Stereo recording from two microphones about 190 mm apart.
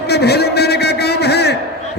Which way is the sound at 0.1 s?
60° left (ahead or behind).